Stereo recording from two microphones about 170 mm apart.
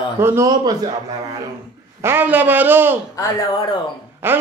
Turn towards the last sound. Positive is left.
turn(degrees=-10)  # may be behind; listen again after turning